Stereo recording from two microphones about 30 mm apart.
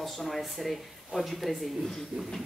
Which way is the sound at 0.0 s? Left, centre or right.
Centre.